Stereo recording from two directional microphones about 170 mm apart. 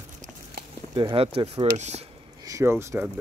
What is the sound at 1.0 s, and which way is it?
Speech, 30° right (ahead or behind).